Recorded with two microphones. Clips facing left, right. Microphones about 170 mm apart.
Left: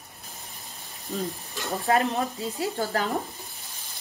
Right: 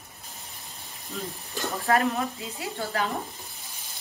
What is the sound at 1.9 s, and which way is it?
Sizzle, 25° left (ahead or behind).